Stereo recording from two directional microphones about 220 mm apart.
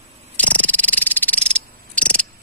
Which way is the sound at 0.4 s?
5° left (ahead or behind).